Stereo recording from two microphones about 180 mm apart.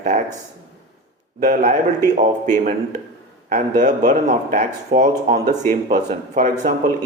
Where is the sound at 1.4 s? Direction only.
45° right (ahead or behind).